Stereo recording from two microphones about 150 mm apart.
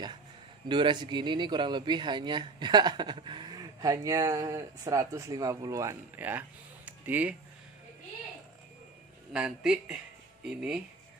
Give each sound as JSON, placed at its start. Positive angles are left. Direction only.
{"t": 0.7, "sound": "speech", "side_deg": -30}
{"t": 6.9, "sound": "a sound", "side_deg": -10}
{"t": 9.3, "sound": "speech", "side_deg": -5}